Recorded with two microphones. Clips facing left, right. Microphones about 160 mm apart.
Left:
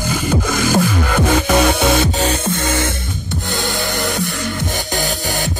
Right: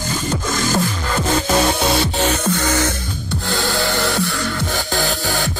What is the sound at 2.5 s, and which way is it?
Music, 25° left (ahead or behind).